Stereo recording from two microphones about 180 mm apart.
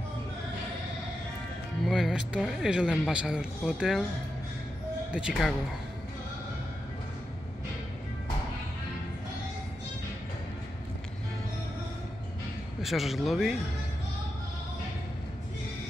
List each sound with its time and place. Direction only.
1.9 s speech: centre (ahead or behind)
5.1 s speech: centre (ahead or behind)
12.8 s speech: centre (ahead or behind)